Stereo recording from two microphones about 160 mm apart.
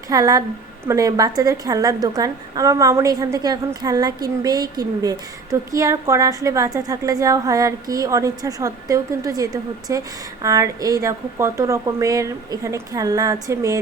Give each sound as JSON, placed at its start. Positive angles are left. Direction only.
{"t": 0.1, "sound": "a woman's voice", "side_deg": -20}